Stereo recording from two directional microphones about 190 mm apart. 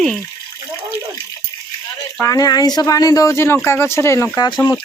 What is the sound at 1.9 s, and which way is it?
Speech, 15° left (ahead or behind).